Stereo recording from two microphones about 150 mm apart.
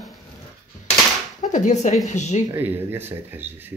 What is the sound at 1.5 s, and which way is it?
Speech, 50° left (ahead or behind).